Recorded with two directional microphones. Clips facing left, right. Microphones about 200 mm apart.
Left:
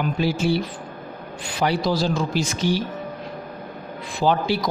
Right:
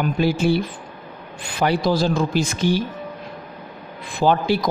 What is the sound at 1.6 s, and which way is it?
Speech, 55° right (ahead or behind).